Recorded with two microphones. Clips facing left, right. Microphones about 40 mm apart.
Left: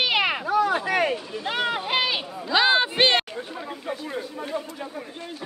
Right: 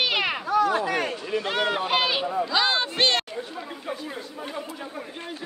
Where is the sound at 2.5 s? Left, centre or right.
Centre.